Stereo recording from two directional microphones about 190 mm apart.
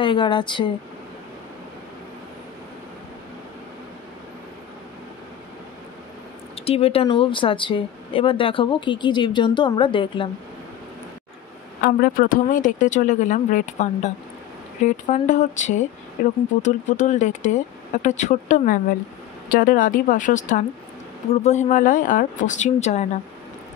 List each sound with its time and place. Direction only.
0.0 s a woman's voice: 25° left (ahead or behind)
6.5 s a woman's voice: 30° left (ahead or behind)
11.8 s speech: 50° left (ahead or behind)